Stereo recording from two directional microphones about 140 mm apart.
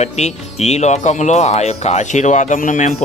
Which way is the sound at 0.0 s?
50° left (ahead or behind).